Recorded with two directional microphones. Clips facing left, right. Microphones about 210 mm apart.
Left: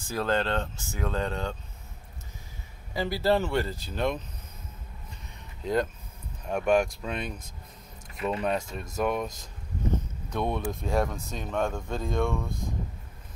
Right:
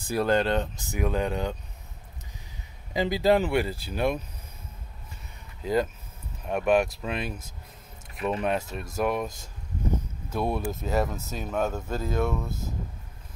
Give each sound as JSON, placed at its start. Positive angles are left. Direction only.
{"t": 0.1, "sound": "speech", "side_deg": -15}
{"t": 2.9, "sound": "speech", "side_deg": -15}
{"t": 5.6, "sound": "speech", "side_deg": -5}
{"t": 10.3, "sound": "speech", "side_deg": -5}